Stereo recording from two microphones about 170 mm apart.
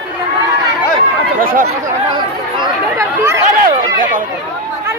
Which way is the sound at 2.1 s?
25° right (ahead or behind).